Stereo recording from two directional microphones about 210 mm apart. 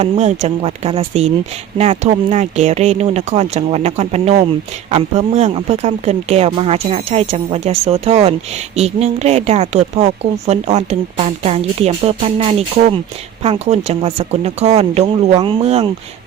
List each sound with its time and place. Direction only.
0.0 s speech: 30° right (ahead or behind)